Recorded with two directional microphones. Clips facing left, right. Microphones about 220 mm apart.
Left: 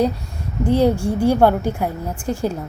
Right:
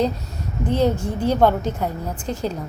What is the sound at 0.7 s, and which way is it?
A woman's voice, 10° left (ahead or behind).